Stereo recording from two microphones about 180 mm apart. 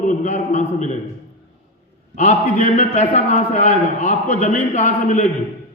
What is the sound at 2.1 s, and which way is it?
A man's voice, 45° left (ahead or behind).